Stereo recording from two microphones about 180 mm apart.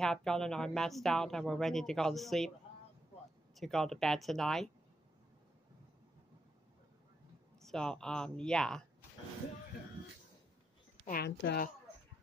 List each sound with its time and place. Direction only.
0.0 s speech: 5° left (ahead or behind)
3.5 s speech: centre (ahead or behind)
7.6 s speech: 5° left (ahead or behind)
11.1 s speech: 65° left (ahead or behind)